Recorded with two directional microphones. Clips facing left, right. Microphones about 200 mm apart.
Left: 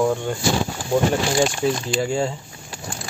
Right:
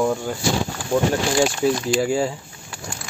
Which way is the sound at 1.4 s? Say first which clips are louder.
Right 2 dB; 5° right (ahead or behind).